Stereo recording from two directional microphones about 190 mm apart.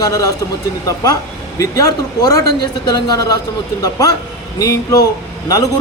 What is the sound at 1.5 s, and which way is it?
A man's voice, 15° left (ahead or behind).